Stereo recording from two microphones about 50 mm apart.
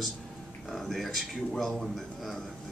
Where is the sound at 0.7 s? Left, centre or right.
Centre.